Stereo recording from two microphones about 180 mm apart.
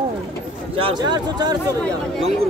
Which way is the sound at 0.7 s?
25° right (ahead or behind).